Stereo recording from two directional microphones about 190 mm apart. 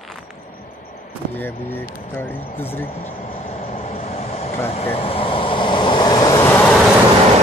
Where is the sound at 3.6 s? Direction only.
35° left (ahead or behind); by 6.8 s 10° left (ahead or behind).